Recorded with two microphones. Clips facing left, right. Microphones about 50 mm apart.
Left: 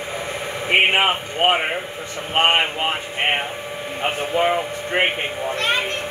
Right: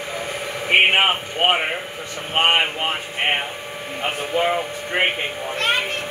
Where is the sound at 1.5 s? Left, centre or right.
Centre.